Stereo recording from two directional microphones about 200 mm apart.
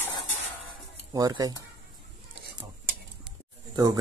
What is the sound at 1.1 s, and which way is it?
Speech, 20° right (ahead or behind).